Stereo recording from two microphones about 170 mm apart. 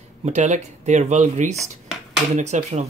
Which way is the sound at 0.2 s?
45° right (ahead or behind).